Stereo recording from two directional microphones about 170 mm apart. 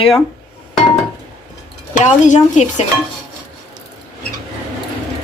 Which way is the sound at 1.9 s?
45° left (ahead or behind).